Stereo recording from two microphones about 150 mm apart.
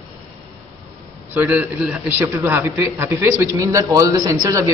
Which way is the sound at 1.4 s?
15° right (ahead or behind).